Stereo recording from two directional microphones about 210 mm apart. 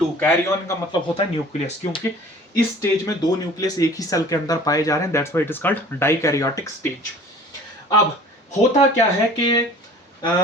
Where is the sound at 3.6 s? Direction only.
15° left (ahead or behind).